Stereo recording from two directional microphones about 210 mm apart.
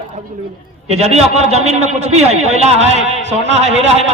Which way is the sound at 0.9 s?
30° right (ahead or behind).